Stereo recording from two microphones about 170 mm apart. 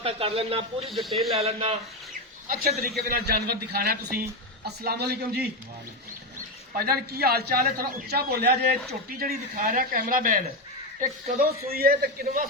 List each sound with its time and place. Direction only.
0.0 s a man's voice: 35° right (ahead or behind)
0.9 s speech: centre (ahead or behind)
1.4 s a man's voice: 35° right (ahead or behind)
2.5 s a man's voice: 55° right (ahead or behind)
6.7 s a man's voice: 65° right (ahead or behind)